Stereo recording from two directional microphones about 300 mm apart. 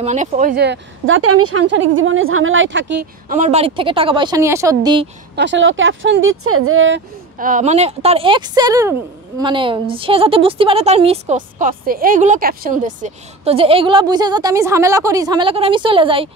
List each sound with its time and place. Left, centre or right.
0.0 s speech: right
5.3 s speech: right
7.3 s a woman's voice: right